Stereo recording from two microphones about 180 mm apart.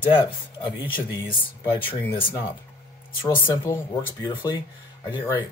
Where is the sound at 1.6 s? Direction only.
10° left (ahead or behind).